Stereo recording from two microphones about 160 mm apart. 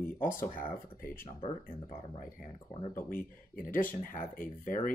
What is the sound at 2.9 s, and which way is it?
Speech, 60° left (ahead or behind).